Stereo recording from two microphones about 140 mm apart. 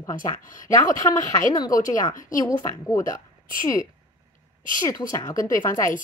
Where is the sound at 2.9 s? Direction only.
20° left (ahead or behind).